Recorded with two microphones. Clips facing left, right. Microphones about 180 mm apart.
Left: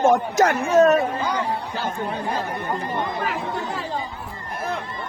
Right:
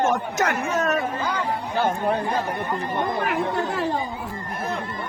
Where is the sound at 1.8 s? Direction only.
60° right (ahead or behind).